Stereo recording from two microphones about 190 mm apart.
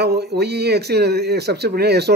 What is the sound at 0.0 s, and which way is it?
Speech, 60° right (ahead or behind).